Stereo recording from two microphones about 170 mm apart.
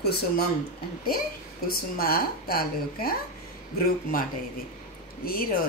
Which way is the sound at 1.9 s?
60° left (ahead or behind).